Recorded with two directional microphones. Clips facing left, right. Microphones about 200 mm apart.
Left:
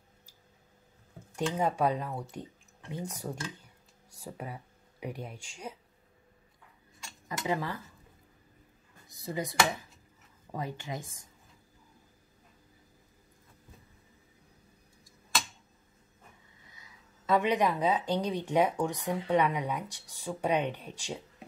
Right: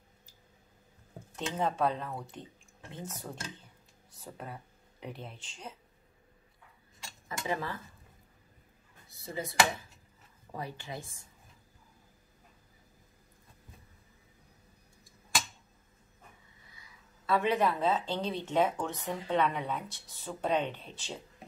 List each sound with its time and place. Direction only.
1.3 s speech: 10° left (ahead or behind)
7.2 s speech: 15° left (ahead or behind)
9.1 s speech: 15° left (ahead or behind)
17.3 s speech: 15° left (ahead or behind)